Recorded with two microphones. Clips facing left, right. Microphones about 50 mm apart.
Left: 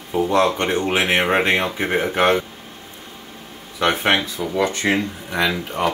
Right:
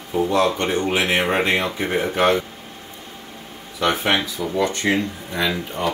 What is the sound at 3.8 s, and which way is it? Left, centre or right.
Speech, left.